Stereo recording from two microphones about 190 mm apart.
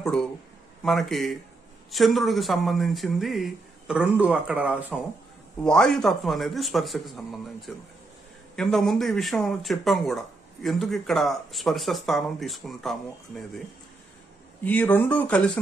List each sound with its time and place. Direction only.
0.0 s speech: 5° left (ahead or behind)
5.6 s speech: 5° left (ahead or behind)
14.6 s speech: 10° left (ahead or behind)